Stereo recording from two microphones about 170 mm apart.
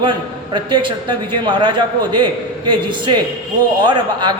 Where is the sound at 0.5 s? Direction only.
30° right (ahead or behind).